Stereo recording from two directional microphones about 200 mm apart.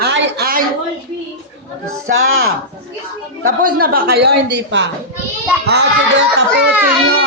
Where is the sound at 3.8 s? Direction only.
50° right (ahead or behind).